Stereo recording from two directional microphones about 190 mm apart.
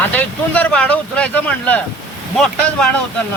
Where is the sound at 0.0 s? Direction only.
10° left (ahead or behind).